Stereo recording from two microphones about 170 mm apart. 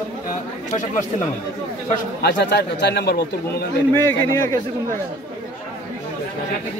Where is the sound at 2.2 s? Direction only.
80° left.